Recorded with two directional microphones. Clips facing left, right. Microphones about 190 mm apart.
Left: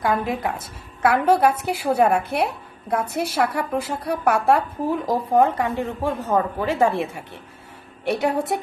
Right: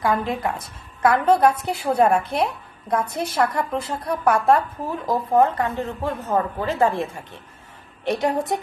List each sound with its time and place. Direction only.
0.0 s a woman's voice: centre (ahead or behind)